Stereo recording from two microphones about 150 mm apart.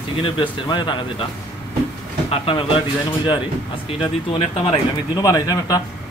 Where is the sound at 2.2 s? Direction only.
40° left (ahead or behind).